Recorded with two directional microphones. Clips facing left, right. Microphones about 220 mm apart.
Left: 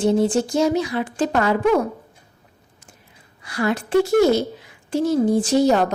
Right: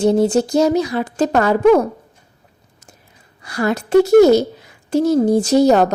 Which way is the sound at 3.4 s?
40° right (ahead or behind).